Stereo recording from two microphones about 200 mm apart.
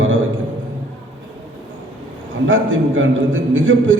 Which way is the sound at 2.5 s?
75° right (ahead or behind).